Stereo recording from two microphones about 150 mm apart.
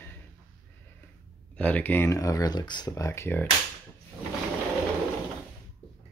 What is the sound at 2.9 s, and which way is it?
Speech, 20° left (ahead or behind).